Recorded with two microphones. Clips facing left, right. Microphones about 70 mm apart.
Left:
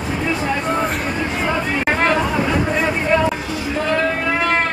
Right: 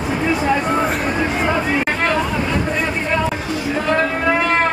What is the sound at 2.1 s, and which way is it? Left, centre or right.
Chatter, centre.